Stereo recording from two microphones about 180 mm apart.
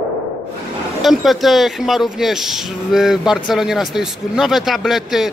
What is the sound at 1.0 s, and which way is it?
Speech, centre (ahead or behind).